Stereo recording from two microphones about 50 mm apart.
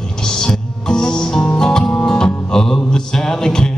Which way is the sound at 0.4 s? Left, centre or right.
Centre.